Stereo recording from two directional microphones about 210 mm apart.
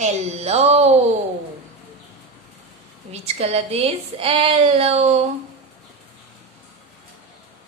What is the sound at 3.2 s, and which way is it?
Speech, 30° right (ahead or behind).